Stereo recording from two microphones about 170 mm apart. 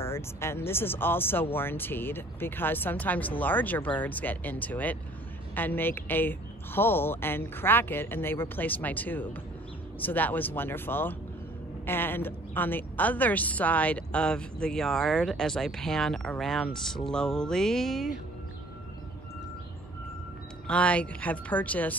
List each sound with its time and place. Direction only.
0.0 s a woman's voice: 15° left (ahead or behind)
20.6 s speech: 5° left (ahead or behind)